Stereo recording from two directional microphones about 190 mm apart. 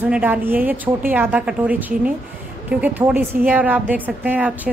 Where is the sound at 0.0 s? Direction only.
10° right (ahead or behind).